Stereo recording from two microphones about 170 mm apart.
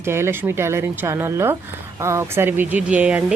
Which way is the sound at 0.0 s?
15° right (ahead or behind).